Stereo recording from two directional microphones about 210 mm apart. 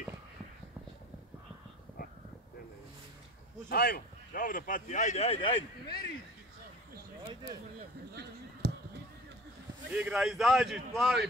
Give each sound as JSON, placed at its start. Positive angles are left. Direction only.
{"t": 3.6, "sound": "speech", "side_deg": 45}
{"t": 8.1, "sound": "basketball bounce", "side_deg": -50}
{"t": 9.8, "sound": "a man's voice", "side_deg": -5}